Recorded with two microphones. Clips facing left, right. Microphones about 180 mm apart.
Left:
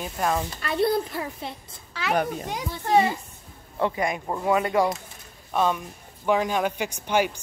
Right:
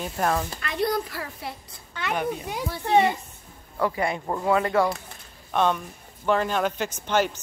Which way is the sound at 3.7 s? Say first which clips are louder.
Even; 20° left (ahead or behind).